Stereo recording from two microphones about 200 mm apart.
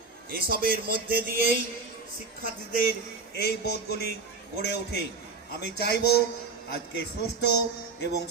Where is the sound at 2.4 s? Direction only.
45° left (ahead or behind).